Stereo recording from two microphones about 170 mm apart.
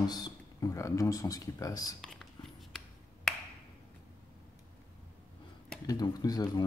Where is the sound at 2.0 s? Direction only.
5° left (ahead or behind).